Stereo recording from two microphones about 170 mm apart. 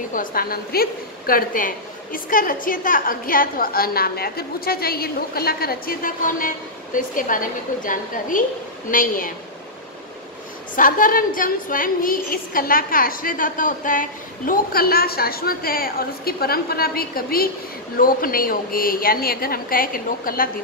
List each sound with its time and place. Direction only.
0.1 s a woman's voice: 55° left (ahead or behind)
10.8 s a woman's voice: 55° left (ahead or behind)